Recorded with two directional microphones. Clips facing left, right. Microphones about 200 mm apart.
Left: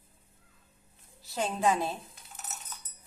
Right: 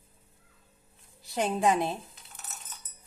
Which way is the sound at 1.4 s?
20° right (ahead or behind).